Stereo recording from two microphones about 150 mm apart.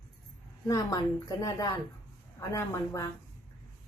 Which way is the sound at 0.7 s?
20° left (ahead or behind).